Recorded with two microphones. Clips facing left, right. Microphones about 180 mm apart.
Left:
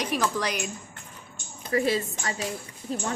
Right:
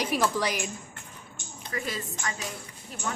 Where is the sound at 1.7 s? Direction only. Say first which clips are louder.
Left 10 dB; 35° left (ahead or behind).